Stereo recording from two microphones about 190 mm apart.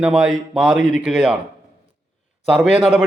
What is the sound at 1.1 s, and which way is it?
Speech, 5° right (ahead or behind).